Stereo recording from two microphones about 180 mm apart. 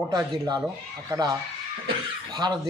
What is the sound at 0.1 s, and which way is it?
Speech, 20° right (ahead or behind).